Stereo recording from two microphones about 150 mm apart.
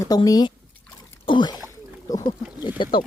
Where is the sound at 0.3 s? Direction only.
25° left (ahead or behind).